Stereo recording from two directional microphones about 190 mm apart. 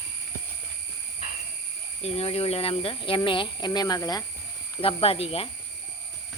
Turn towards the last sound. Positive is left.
turn(degrees=30)  # may be behind; listen again after turning